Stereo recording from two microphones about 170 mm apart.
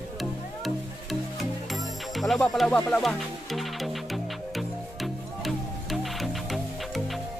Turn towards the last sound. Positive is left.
turn(degrees=0)  # may be behind; listen again after turning